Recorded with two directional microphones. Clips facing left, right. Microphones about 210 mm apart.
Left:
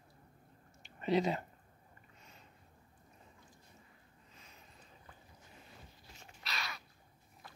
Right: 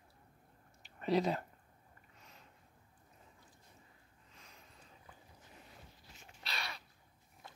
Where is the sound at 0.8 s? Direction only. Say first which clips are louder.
Left 1 dB; centre (ahead or behind).